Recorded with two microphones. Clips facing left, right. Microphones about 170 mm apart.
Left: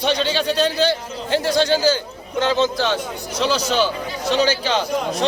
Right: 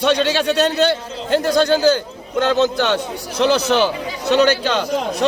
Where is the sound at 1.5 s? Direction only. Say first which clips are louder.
Right 3 dB; 55° right (ahead or behind).